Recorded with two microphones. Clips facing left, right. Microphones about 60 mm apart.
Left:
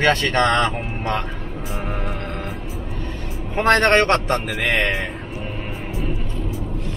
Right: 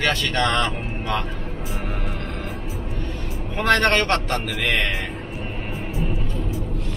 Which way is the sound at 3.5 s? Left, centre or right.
Left.